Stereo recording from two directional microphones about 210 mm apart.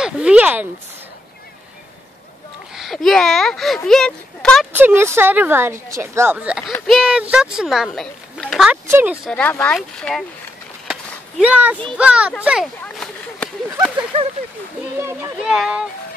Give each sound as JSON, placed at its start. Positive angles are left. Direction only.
{"t": 0.0, "sound": "a sound", "side_deg": -5}
{"t": 2.7, "sound": "speech", "side_deg": 0}
{"t": 4.7, "sound": "speech", "side_deg": -10}
{"t": 9.3, "sound": "speech", "side_deg": 10}
{"t": 10.9, "sound": "a sound", "side_deg": -5}
{"t": 12.0, "sound": "speech", "side_deg": -5}
{"t": 12.8, "sound": "a sound", "side_deg": 5}
{"t": 14.1, "sound": "speech", "side_deg": -25}
{"t": 15.0, "sound": "speech", "side_deg": -10}